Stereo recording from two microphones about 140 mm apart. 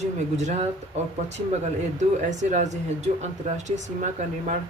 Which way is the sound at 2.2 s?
60° right (ahead or behind).